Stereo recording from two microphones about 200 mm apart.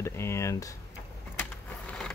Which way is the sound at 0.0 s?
15° left (ahead or behind).